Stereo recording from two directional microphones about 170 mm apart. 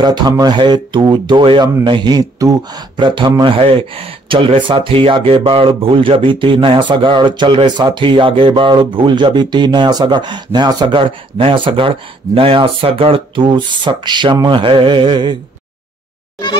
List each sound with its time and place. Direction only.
0.0 s speech: 25° right (ahead or behind)